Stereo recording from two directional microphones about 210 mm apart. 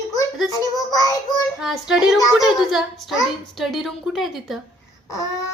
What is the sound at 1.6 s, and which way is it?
A woman's voice, centre (ahead or behind).